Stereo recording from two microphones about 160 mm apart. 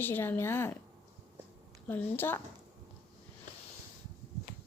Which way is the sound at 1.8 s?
10° left (ahead or behind).